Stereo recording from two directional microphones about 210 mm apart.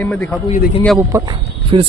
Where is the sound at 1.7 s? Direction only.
25° right (ahead or behind).